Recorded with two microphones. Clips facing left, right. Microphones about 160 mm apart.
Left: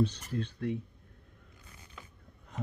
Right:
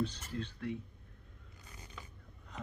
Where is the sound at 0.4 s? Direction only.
55° left (ahead or behind).